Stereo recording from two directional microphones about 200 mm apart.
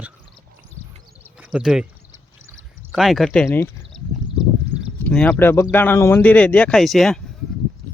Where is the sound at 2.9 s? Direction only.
Centre (ahead or behind).